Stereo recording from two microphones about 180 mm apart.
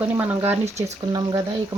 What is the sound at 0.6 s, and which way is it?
Speech, 40° right (ahead or behind).